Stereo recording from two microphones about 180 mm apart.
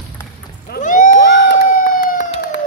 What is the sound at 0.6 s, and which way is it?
Boat, 50° left (ahead or behind).